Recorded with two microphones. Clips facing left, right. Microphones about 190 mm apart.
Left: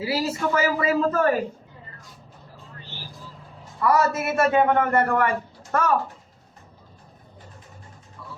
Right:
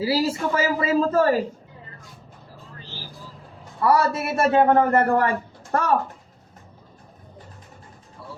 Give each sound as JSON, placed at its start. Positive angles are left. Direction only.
{"t": 0.0, "sound": "a man's voice", "side_deg": -30}
{"t": 3.8, "sound": "a man's voice", "side_deg": -30}